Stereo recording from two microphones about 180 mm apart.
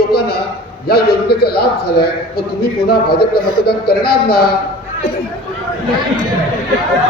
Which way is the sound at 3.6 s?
60° left (ahead or behind).